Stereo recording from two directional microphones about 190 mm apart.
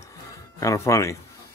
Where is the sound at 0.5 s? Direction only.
15° left (ahead or behind).